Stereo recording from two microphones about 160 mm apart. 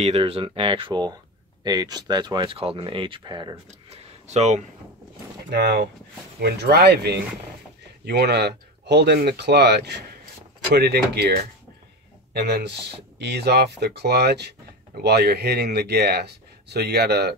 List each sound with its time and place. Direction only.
0.0 s speech: 35° right (ahead or behind)
3.9 s a sound: 45° right (ahead or behind)
5.5 s speech: 85° right